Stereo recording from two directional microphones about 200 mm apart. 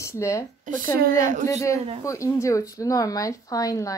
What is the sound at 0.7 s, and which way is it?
Speech, 40° right (ahead or behind).